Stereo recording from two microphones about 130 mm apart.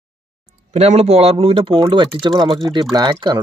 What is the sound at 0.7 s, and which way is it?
Speech, 55° right (ahead or behind).